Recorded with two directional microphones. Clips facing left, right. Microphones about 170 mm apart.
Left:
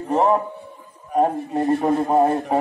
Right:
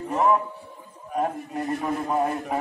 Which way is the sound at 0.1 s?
30° left (ahead or behind).